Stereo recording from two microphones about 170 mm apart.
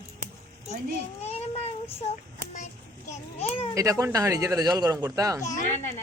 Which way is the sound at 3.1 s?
40° left (ahead or behind).